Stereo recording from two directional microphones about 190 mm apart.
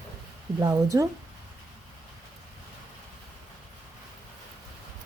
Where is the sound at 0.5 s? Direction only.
20° right (ahead or behind).